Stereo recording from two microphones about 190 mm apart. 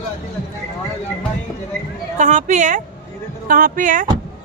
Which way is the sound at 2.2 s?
40° right (ahead or behind).